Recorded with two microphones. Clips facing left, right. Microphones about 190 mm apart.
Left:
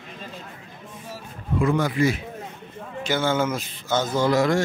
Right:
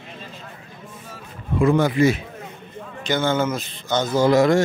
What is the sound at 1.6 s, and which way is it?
Speech, 25° right (ahead or behind).